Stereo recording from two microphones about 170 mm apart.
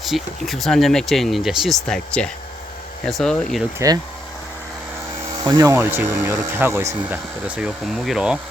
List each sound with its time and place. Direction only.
0.0 s speech: centre (ahead or behind)
3.8 s speech: 15° right (ahead or behind)
5.4 s speech: 25° right (ahead or behind); by 8.4 s 5° right (ahead or behind)